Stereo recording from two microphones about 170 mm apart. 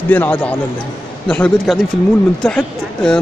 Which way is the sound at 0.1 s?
10° left (ahead or behind).